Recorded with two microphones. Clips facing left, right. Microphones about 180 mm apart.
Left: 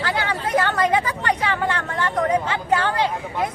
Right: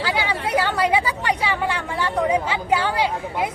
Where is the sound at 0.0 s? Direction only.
10° right (ahead or behind).